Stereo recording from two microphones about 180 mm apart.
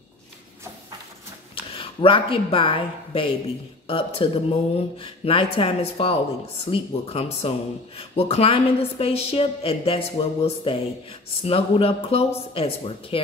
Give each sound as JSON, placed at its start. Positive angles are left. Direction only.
{"t": 1.5, "sound": "a woman's voice", "side_deg": 30}